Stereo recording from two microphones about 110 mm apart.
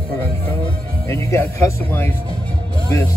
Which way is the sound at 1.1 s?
25° left (ahead or behind).